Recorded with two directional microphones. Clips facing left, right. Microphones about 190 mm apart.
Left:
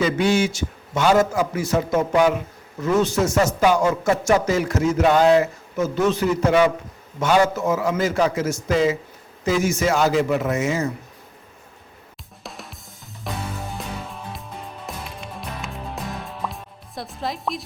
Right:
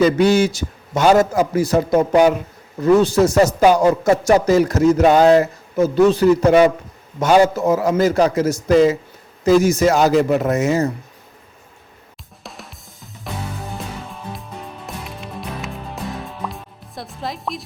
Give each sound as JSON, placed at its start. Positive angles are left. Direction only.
{"t": 0.0, "sound": "speech", "side_deg": -40}
{"t": 12.4, "sound": "drum kit", "side_deg": 0}
{"t": 13.3, "sound": "music", "side_deg": 0}